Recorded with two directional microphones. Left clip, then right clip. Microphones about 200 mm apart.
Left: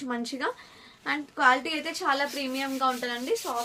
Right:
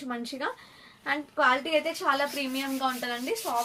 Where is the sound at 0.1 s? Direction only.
50° left (ahead or behind).